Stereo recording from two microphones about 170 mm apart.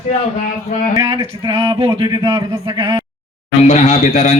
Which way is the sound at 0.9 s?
25° right (ahead or behind).